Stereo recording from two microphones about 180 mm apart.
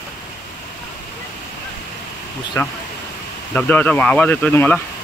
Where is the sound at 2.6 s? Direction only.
15° left (ahead or behind).